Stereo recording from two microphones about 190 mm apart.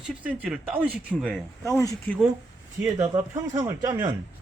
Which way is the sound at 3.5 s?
15° right (ahead or behind).